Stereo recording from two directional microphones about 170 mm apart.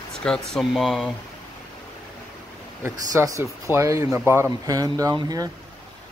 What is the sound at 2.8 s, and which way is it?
Speech, 15° right (ahead or behind).